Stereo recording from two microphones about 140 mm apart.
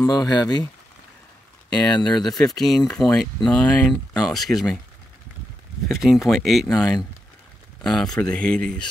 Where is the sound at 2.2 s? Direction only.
5° left (ahead or behind).